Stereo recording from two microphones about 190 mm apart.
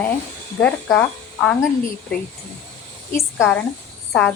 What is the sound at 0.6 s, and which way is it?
Speech, 5° left (ahead or behind).